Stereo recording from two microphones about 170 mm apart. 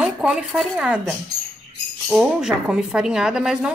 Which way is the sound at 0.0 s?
5° right (ahead or behind).